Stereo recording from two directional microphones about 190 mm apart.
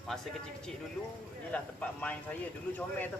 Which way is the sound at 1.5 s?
5° left (ahead or behind).